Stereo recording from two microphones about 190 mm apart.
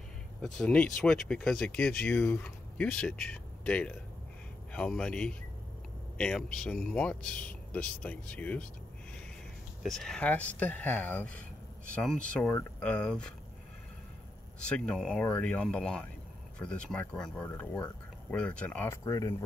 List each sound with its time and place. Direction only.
0.6 s speech: 5° left (ahead or behind)
9.8 s speech: centre (ahead or behind)
14.6 s speech: 5° left (ahead or behind)
19.0 s speech: 20° left (ahead or behind)